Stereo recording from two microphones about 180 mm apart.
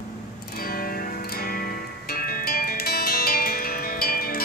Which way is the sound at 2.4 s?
55° left (ahead or behind).